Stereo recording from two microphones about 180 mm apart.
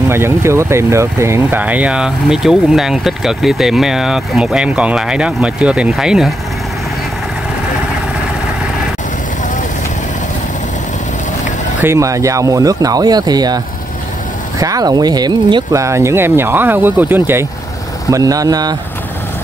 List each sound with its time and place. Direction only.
0.1 s speech: 15° right (ahead or behind)
11.8 s speech: 15° right (ahead or behind)
14.6 s speech: 20° right (ahead or behind)